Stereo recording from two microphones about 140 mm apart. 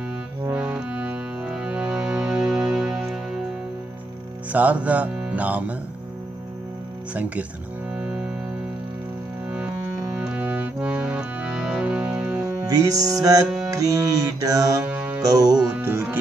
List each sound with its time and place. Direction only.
0.5 s music: 5° right (ahead or behind)
4.5 s music: 10° right (ahead or behind)
10.1 s music: 10° right (ahead or behind)
12.6 s music: 25° right (ahead or behind)
14.9 s music: 10° right (ahead or behind)
15.2 s music: 25° right (ahead or behind)
15.7 s music: 15° right (ahead or behind)